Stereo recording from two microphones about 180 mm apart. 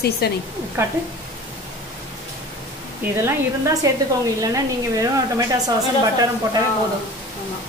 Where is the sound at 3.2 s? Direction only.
15° right (ahead or behind).